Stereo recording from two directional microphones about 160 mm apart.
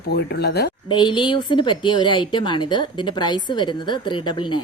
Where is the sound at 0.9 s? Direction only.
30° left (ahead or behind).